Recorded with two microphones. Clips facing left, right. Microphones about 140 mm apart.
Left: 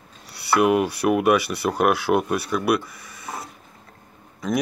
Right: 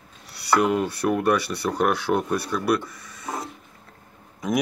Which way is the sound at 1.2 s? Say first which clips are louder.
Left 3 dB; 10° left (ahead or behind).